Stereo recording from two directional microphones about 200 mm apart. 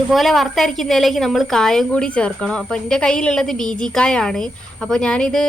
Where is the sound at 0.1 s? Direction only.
Centre (ahead or behind).